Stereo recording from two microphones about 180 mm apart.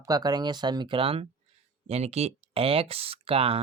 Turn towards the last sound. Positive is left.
turn(degrees=-30)  # may be behind; listen again after turning